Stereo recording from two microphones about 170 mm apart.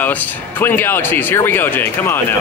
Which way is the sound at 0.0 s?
10° left (ahead or behind).